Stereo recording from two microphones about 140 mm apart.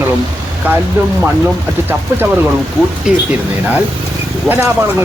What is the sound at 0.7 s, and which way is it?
Speech, 10° right (ahead or behind).